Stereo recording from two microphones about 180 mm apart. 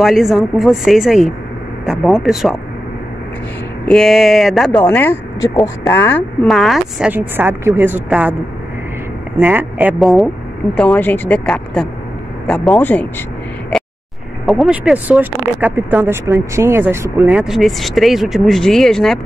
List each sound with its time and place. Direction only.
0.0 s speech: centre (ahead or behind)
3.8 s speech: 5° left (ahead or behind)
4.8 s speech: 10° left (ahead or behind)
6.4 s a woman's voice: centre (ahead or behind)
9.4 s speech: 10° right (ahead or behind); by 13.1 s 10° left (ahead or behind)
14.4 s speech: centre (ahead or behind)